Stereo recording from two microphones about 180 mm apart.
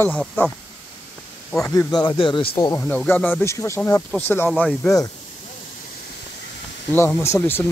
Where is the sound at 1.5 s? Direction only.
15° left (ahead or behind).